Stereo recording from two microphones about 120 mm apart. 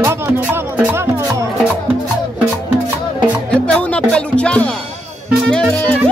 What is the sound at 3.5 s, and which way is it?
Music, 10° left (ahead or behind).